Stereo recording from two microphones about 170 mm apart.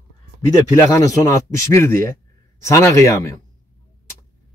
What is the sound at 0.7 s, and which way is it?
Speech, 20° left (ahead or behind).